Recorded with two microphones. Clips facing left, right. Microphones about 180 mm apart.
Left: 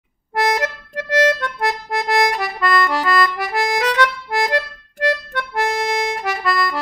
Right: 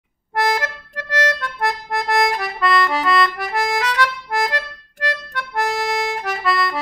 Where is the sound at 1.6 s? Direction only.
Centre (ahead or behind).